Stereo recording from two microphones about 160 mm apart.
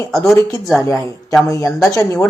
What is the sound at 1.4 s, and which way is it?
Speech, 20° left (ahead or behind).